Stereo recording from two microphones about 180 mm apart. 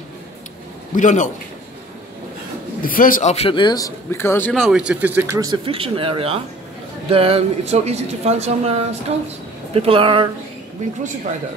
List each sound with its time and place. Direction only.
0.9 s a man's voice: 45° left (ahead or behind)
2.8 s a man's voice: 50° left (ahead or behind); by 5.6 s 20° right (ahead or behind)
5.7 s speech: 30° right (ahead or behind)